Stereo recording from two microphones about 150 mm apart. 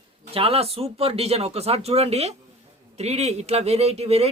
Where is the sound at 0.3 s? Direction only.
40° right (ahead or behind).